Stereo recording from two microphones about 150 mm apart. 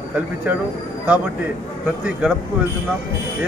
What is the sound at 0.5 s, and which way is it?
Speech, 10° right (ahead or behind).